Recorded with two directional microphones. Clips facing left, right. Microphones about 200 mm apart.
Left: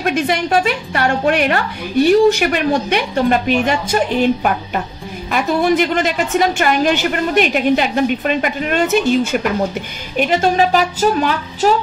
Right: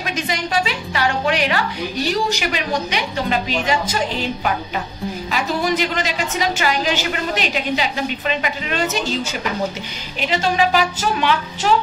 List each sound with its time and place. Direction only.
0.0 s a woman's voice: 55° left (ahead or behind); by 11.7 s 40° left (ahead or behind)